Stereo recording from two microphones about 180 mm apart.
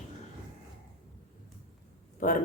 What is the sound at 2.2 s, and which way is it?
Speech, 50° left (ahead or behind).